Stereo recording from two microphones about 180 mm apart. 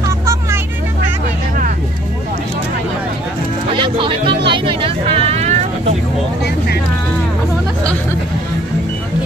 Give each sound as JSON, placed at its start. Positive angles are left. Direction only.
{"t": 3.7, "sound": "music", "side_deg": -25}
{"t": 4.5, "sound": "vehicle", "side_deg": -30}